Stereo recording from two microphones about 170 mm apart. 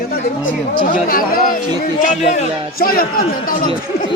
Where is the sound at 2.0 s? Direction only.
45° left (ahead or behind).